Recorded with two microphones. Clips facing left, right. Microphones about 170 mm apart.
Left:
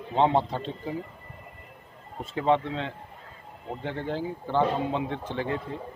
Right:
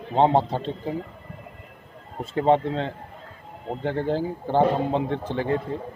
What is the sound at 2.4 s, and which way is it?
Speech, 35° right (ahead or behind).